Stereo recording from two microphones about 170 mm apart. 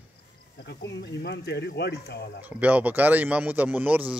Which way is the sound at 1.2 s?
80° left.